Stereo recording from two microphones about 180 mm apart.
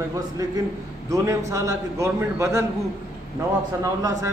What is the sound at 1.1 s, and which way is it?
A man's voice, 15° right (ahead or behind).